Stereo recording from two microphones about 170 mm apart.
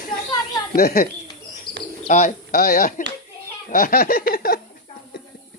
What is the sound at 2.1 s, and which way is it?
Speech, 50° left (ahead or behind).